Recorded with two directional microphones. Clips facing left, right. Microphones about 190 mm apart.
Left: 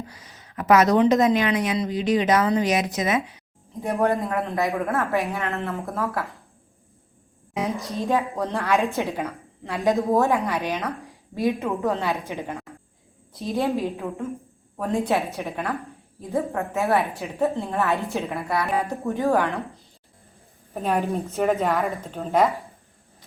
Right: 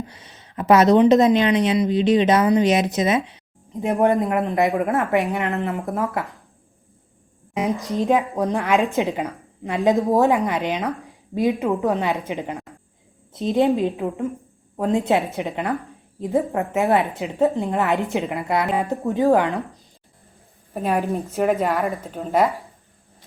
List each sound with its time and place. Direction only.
0.1 s a woman's voice: 25° right (ahead or behind)
7.5 s a woman's voice: 15° right (ahead or behind)
20.7 s a woman's voice: 10° right (ahead or behind)
21.0 s a woman's voice: centre (ahead or behind)